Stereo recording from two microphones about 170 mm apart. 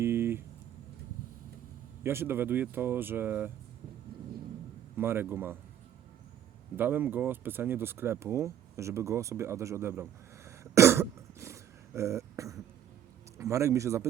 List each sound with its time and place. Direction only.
0.0 s a sound: 15° right (ahead or behind)
2.0 s speech: 15° right (ahead or behind)
4.9 s speech: 15° right (ahead or behind)
6.7 s speech: 10° right (ahead or behind)